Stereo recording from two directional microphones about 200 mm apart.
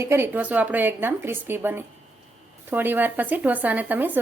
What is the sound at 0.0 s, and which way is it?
Speech, 15° right (ahead or behind).